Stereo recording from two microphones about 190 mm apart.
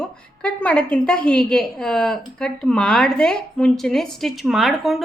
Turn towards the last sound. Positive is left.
turn(degrees=0)  # may be behind; listen again after turning